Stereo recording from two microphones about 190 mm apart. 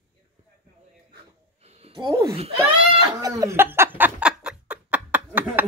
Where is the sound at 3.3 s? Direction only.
15° right (ahead or behind).